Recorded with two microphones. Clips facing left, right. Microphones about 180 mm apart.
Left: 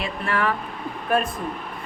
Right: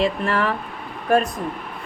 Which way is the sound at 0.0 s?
40° right (ahead or behind).